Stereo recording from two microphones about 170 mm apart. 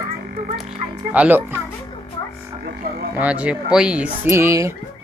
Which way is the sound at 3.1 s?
10° right (ahead or behind).